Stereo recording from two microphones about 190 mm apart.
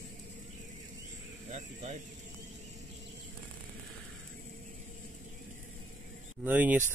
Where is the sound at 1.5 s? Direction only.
35° right (ahead or behind).